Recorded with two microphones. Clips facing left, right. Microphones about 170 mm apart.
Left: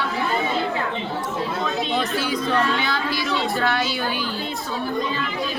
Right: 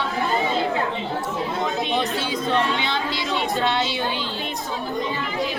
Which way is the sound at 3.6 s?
20° right (ahead or behind).